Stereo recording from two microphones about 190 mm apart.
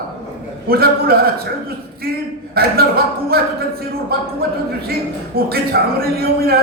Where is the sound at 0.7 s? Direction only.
55° right (ahead or behind).